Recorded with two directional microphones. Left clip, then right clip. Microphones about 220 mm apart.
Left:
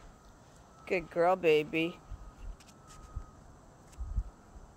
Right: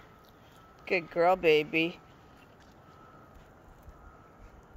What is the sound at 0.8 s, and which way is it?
Speech, 5° right (ahead or behind).